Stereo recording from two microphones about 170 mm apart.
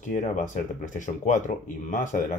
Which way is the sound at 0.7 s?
50° left (ahead or behind).